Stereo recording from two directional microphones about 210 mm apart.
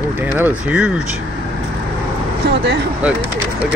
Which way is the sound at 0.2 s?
10° right (ahead or behind).